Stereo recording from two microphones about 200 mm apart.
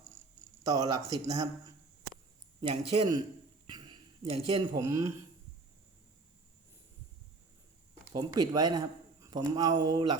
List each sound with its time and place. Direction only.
0.6 s speech: 20° right (ahead or behind)
2.6 s speech: 20° right (ahead or behind)
3.7 s a sound: 20° right (ahead or behind)
4.3 s speech: 25° right (ahead or behind)
4.8 s speech: 15° right (ahead or behind)
8.1 s speech: 20° right (ahead or behind)